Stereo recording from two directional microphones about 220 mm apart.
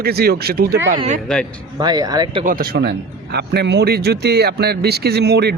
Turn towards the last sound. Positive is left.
turn(degrees=-50)  # may be behind; listen again after turning